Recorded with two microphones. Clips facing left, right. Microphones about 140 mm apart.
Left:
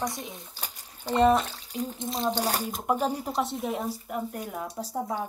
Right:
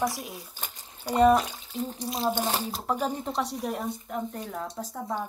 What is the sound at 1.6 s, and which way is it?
Water, 40° left (ahead or behind).